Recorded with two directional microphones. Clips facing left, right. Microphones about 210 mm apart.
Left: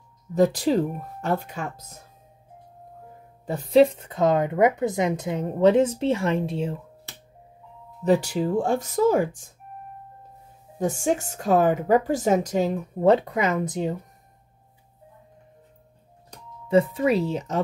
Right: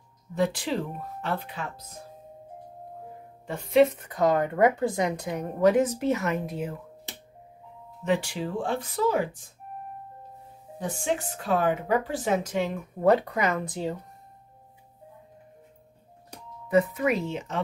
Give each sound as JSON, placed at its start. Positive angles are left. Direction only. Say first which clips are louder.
{"t": 0.3, "sound": "speech", "louder": "left 7 dB", "side_deg": 40}
{"t": 3.4, "sound": "speech", "louder": "left 3 dB", "side_deg": 35}
{"t": 8.0, "sound": "speech", "louder": "left 6 dB", "side_deg": 40}
{"t": 10.8, "sound": "speech", "louder": "left 5 dB", "side_deg": 45}
{"t": 13.0, "sound": "speech", "louder": "left 3 dB", "side_deg": 25}
{"t": 16.6, "sound": "speech", "louder": "left 3 dB", "side_deg": 30}